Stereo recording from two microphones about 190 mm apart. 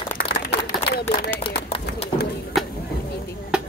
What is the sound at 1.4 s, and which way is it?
Pigeon, 30° left (ahead or behind).